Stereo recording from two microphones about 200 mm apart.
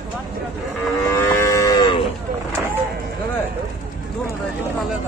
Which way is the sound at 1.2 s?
15° left (ahead or behind).